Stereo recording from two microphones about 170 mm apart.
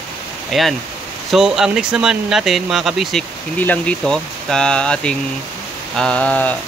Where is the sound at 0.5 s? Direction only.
Centre (ahead or behind).